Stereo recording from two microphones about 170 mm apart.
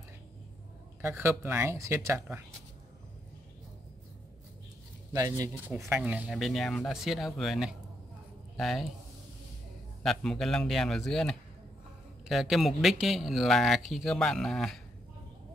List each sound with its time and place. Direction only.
1.0 s speech: 15° right (ahead or behind)
5.1 s speech: 20° right (ahead or behind)
5.7 s speech: 10° right (ahead or behind)
10.0 s speech: centre (ahead or behind)